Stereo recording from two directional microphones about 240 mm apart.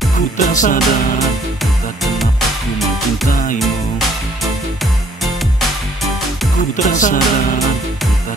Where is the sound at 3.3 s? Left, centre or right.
Left.